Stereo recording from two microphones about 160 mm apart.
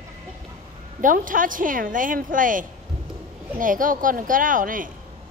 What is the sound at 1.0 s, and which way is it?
A woman's voice, 60° right (ahead or behind).